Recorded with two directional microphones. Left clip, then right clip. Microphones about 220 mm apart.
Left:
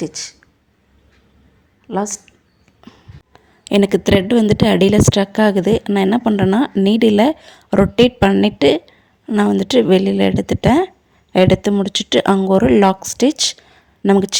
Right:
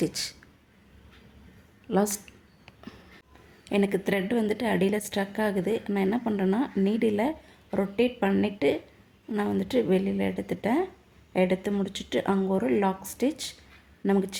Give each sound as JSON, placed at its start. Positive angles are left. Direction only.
{"t": 0.0, "sound": "speech", "side_deg": 10}
{"t": 1.9, "sound": "speech", "side_deg": 10}
{"t": 2.8, "sound": "a sound", "side_deg": 5}
{"t": 3.6, "sound": "a woman's voice", "side_deg": 40}